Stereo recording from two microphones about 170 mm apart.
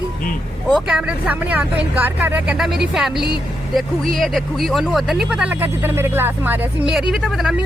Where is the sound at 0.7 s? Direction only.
5° right (ahead or behind).